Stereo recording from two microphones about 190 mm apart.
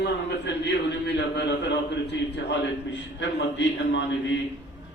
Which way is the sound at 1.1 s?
65° left (ahead or behind).